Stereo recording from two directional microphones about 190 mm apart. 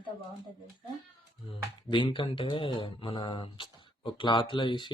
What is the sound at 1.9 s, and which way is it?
Speech, 25° left (ahead or behind).